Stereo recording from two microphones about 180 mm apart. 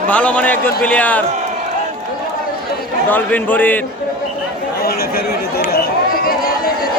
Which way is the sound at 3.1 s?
10° left (ahead or behind).